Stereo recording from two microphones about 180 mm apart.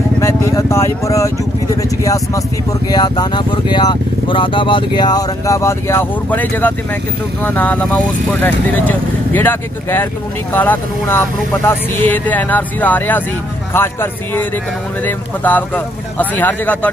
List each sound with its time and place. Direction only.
0.2 s speech: 15° left (ahead or behind)
15.0 s speech: 10° left (ahead or behind)